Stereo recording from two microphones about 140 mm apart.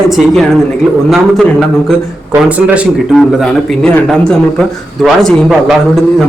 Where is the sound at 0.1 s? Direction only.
Centre (ahead or behind).